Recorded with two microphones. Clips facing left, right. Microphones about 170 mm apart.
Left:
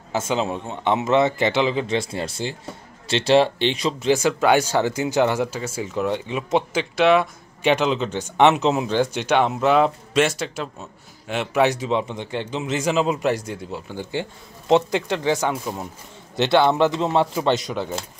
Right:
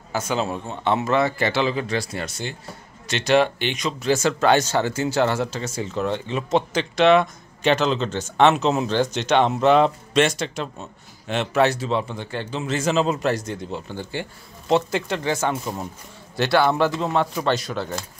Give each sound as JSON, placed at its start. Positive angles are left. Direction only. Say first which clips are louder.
{"t": 0.1, "sound": "a man's voice", "louder": "left 1 dB", "side_deg": 25}
{"t": 4.1, "sound": "a man's voice", "louder": "even", "side_deg": 10}